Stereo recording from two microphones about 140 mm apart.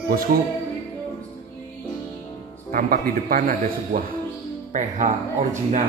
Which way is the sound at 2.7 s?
90° right.